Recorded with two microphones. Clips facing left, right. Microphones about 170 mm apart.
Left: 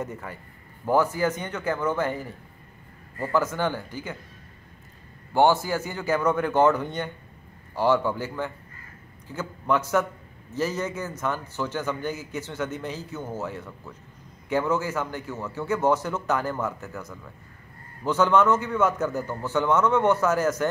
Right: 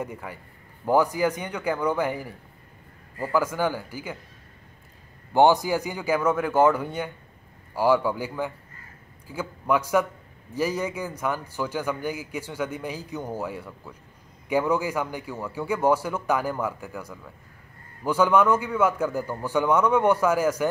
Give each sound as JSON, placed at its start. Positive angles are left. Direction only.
{"t": 0.0, "sound": "a man's voice", "side_deg": -10}
{"t": 5.3, "sound": "a man's voice", "side_deg": -15}